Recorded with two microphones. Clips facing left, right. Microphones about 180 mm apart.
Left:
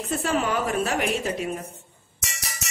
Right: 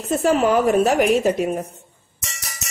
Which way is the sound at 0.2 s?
45° right (ahead or behind).